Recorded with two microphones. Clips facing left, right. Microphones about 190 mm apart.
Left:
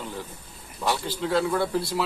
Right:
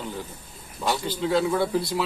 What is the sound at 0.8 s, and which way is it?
Speech, centre (ahead or behind).